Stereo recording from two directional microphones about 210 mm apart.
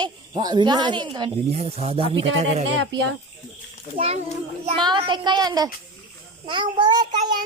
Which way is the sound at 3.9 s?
30° right (ahead or behind).